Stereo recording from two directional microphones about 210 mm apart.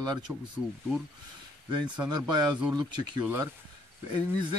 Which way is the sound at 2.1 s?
20° right (ahead or behind).